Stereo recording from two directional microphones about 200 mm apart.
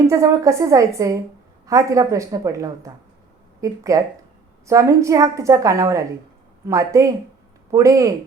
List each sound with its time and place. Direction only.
0.1 s a woman's voice: 15° right (ahead or behind)